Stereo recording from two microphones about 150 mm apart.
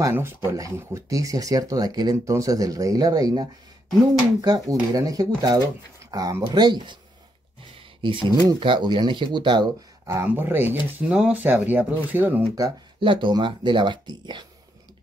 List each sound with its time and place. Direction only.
0.0 s speech: 15° right (ahead or behind)
8.0 s speech: 35° right (ahead or behind)
10.0 s speech: 15° right (ahead or behind)
12.5 s speech: 30° right (ahead or behind)